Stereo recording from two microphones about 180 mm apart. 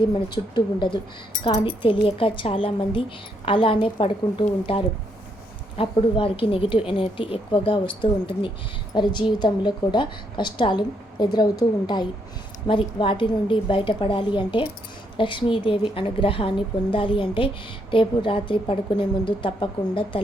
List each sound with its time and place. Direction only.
0.1 s a woman's voice: 25° left (ahead or behind)